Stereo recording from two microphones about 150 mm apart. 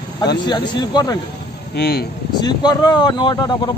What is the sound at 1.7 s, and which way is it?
Speech, 90° left.